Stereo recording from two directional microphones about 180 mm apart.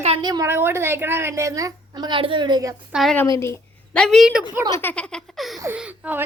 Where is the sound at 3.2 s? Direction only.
15° left (ahead or behind).